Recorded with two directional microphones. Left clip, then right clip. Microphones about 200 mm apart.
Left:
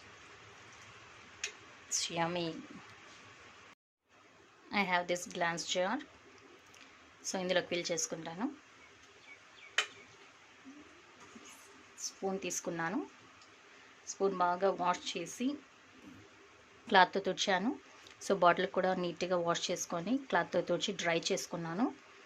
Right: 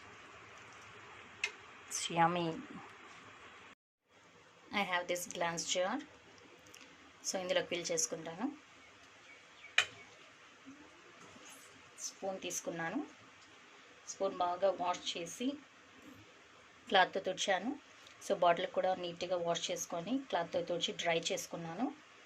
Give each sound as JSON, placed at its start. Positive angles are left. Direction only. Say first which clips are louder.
{"t": 1.9, "sound": "speech", "louder": "right 3 dB", "side_deg": 0}
{"t": 4.7, "sound": "a woman's voice", "louder": "left 3 dB", "side_deg": 15}
{"t": 7.2, "sound": "a woman's voice", "louder": "left 2 dB", "side_deg": 15}
{"t": 12.2, "sound": "speech", "louder": "left 3 dB", "side_deg": 35}
{"t": 14.2, "sound": "speech", "louder": "left 3 dB", "side_deg": 40}
{"t": 16.8, "sound": "a woman's voice", "louder": "left 3 dB", "side_deg": 25}